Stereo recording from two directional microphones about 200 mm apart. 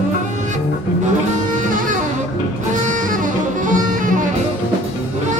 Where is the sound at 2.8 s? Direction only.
40° right (ahead or behind).